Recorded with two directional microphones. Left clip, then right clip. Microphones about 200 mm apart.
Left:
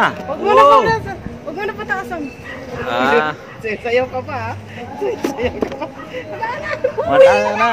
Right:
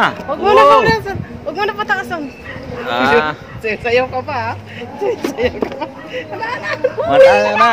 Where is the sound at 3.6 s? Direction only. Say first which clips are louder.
Right 3 dB; 45° right (ahead or behind).